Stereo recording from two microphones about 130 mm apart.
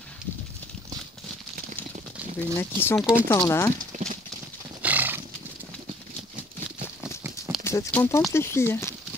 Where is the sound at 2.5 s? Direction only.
15° left (ahead or behind).